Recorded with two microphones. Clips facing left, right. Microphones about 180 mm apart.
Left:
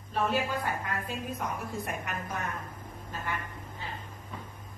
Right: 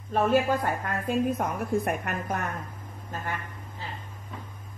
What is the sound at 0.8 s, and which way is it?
A woman's voice, 50° right (ahead or behind).